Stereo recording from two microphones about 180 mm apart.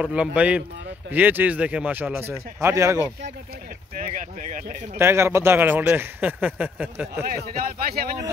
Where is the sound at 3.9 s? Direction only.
50° right (ahead or behind).